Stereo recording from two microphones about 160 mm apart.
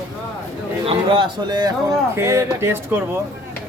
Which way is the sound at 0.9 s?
30° right (ahead or behind).